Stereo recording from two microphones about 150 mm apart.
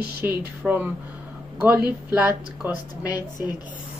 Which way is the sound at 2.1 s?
10° right (ahead or behind).